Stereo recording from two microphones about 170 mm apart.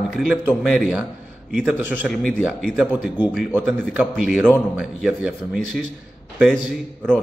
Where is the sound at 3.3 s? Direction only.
5° right (ahead or behind).